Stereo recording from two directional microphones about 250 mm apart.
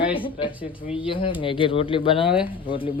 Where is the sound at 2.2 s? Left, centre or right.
Centre.